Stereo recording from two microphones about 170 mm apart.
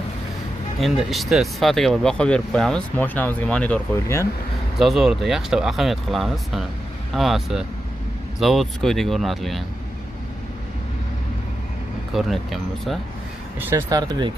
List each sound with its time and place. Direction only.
0.7 s speech: centre (ahead or behind)
12.1 s speech: centre (ahead or behind)
13.6 s speech: 15° right (ahead or behind)
13.8 s speech: 25° right (ahead or behind)